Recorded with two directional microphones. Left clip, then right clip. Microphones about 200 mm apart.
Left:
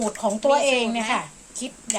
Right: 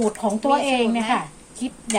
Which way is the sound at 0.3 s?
40° left (ahead or behind).